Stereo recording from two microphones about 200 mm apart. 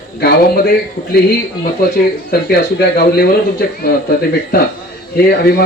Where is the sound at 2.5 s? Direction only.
50° left (ahead or behind).